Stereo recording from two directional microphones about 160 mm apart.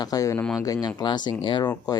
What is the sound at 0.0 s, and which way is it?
Speech, 20° left (ahead or behind).